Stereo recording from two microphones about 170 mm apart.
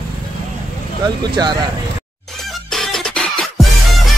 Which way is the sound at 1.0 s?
25° right (ahead or behind).